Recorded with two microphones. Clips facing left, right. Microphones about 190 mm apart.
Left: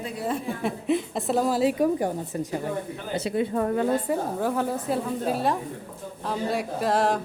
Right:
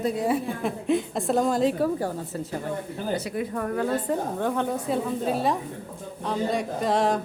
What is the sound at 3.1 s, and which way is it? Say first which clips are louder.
Speech: left 8 dB; 25° left (ahead or behind).